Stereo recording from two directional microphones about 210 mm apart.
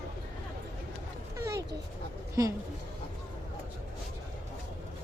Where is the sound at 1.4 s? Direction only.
15° right (ahead or behind).